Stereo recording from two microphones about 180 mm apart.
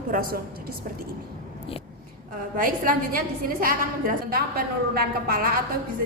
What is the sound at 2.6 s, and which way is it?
A woman's voice, 50° right (ahead or behind).